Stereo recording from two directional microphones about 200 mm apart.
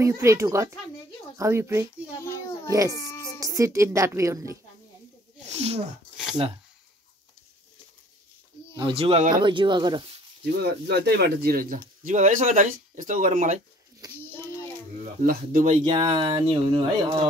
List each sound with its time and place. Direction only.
0.0 s a woman's voice: 15° right (ahead or behind)
2.1 s a sound: 15° left (ahead or behind)
2.9 s a child's voice: 15° left (ahead or behind)
3.3 s a woman's voice: 15° right (ahead or behind)
8.7 s speech: 25° right (ahead or behind)
10.4 s speech: 55° right (ahead or behind)
14.2 s child singing: 10° left (ahead or behind)
14.7 s speech: 40° right (ahead or behind)
15.8 s speech: 25° right (ahead or behind)